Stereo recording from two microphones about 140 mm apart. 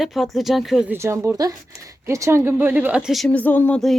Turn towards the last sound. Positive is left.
turn(degrees=10)  # may be behind; listen again after turning